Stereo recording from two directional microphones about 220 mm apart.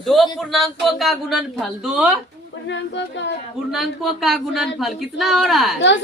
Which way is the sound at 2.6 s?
55° left (ahead or behind).